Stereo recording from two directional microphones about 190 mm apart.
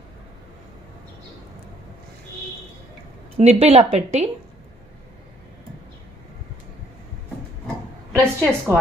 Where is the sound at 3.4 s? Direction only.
35° right (ahead or behind).